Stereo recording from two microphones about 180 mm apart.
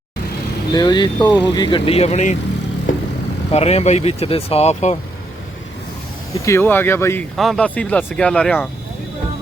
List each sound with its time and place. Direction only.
0.7 s speech: 25° left (ahead or behind)
3.5 s speech: 35° left (ahead or behind)
6.4 s speech: 15° left (ahead or behind)
7.3 s speech: centre (ahead or behind)